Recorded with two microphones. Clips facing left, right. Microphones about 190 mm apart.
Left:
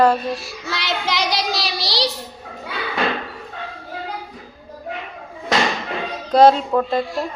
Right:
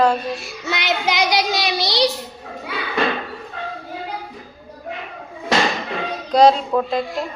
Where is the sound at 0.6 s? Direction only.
20° right (ahead or behind).